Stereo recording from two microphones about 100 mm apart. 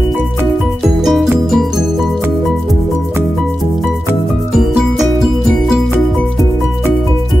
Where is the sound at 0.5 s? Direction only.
Centre (ahead or behind).